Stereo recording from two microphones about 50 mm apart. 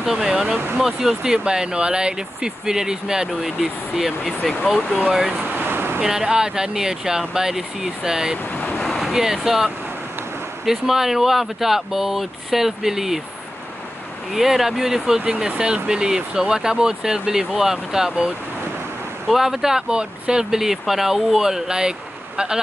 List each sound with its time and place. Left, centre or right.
0.0 s speech: centre
5.4 s vehicle: right
5.9 s speech: centre
8.4 s waves: left
8.7 s vehicle: centre
10.6 s speech: centre
14.3 s speech: centre